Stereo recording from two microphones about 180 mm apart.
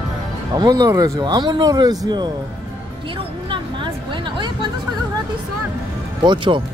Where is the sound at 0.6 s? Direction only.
20° right (ahead or behind).